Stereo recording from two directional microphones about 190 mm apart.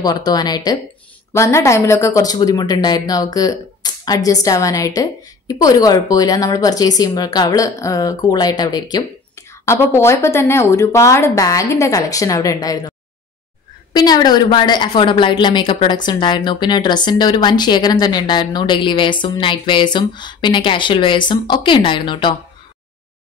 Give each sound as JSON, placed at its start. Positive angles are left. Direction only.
{"t": 0.0, "sound": "a woman's voice", "side_deg": 20}
{"t": 13.9, "sound": "a woman's voice", "side_deg": 20}